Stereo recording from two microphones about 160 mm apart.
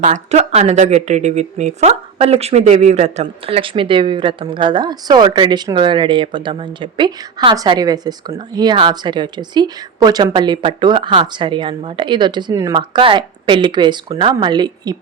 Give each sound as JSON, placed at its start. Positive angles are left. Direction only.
{"t": 0.0, "sound": "a woman's voice", "side_deg": -45}